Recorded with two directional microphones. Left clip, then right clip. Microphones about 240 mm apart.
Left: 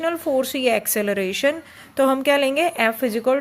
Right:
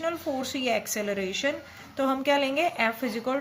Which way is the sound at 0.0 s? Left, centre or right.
Left.